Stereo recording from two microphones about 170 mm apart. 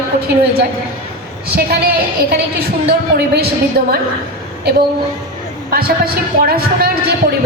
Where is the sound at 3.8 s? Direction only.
70° right (ahead or behind).